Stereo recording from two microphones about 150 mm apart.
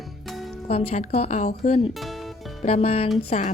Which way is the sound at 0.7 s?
45° left (ahead or behind).